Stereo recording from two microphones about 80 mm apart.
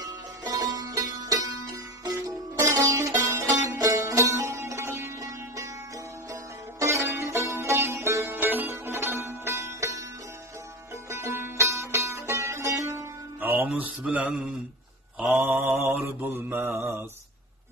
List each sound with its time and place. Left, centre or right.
0.0 s music: right
6.8 s music: right
11.1 s music: right; by 14.3 s centre
15.2 s mantra: right